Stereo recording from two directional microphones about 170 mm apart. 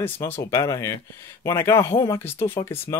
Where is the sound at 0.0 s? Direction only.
15° left (ahead or behind).